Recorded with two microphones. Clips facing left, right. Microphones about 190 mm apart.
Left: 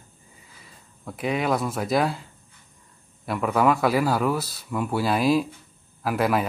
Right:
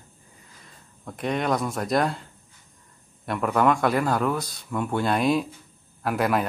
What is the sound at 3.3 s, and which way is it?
Speech, centre (ahead or behind).